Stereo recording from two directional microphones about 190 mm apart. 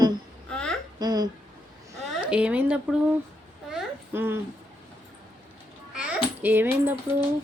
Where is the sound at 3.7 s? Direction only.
5° right (ahead or behind).